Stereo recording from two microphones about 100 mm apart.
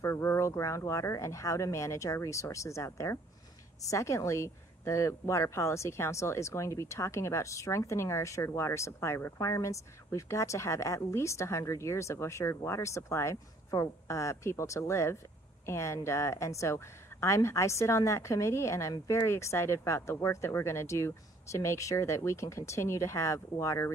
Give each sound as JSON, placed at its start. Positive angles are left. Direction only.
{"t": 0.0, "sound": "speech", "side_deg": 25}